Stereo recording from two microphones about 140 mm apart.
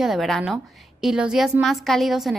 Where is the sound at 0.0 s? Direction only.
Centre (ahead or behind).